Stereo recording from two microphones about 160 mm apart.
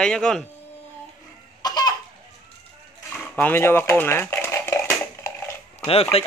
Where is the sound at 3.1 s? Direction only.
10° left (ahead or behind).